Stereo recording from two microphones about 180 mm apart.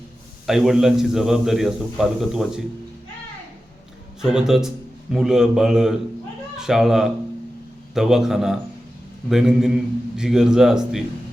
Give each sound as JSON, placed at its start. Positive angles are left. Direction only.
{"t": 0.4, "sound": "a man's voice", "side_deg": 0}
{"t": 4.2, "sound": "a man's voice", "side_deg": -5}